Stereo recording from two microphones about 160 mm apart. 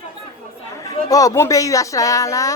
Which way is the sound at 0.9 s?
20° left (ahead or behind).